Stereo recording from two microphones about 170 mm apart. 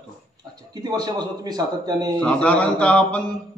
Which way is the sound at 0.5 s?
25° right (ahead or behind).